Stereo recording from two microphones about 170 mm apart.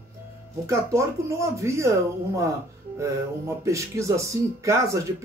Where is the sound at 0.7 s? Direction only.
15° right (ahead or behind).